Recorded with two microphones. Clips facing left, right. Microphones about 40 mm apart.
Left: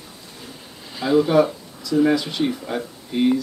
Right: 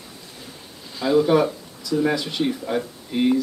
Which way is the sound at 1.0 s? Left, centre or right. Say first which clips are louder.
Left 1 dB; centre.